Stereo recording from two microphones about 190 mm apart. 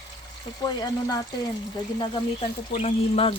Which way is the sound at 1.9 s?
30° left (ahead or behind).